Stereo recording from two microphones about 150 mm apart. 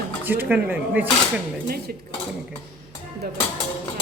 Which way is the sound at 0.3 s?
10° right (ahead or behind).